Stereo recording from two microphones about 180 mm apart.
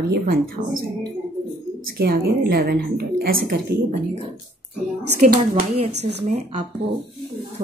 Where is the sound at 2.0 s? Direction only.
60° right (ahead or behind).